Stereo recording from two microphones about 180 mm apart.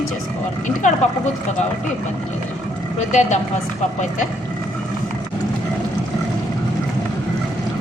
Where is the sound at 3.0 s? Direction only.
40° left (ahead or behind).